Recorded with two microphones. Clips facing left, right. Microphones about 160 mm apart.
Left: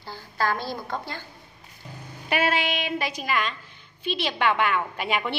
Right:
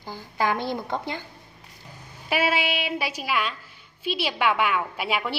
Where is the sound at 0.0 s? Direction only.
15° right (ahead or behind).